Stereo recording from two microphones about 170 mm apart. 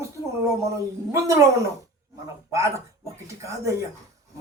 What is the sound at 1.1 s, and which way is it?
A man's voice, 20° right (ahead or behind).